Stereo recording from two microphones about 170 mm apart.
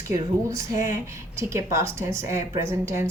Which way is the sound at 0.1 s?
20° right (ahead or behind).